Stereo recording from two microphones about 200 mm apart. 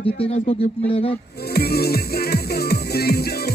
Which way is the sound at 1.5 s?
50° left (ahead or behind).